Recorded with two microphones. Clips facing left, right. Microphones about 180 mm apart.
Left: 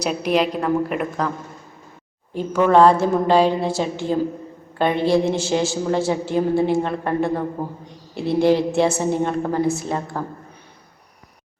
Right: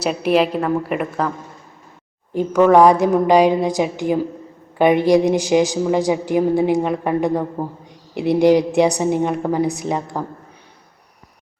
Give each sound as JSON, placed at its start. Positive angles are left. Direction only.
{"t": 0.0, "sound": "a woman's voice", "side_deg": -5}
{"t": 2.3, "sound": "a woman's voice", "side_deg": -15}